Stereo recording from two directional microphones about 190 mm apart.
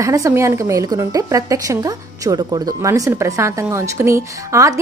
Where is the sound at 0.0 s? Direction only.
15° right (ahead or behind).